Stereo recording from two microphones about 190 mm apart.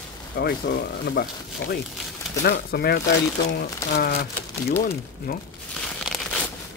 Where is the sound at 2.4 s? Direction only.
55° left (ahead or behind).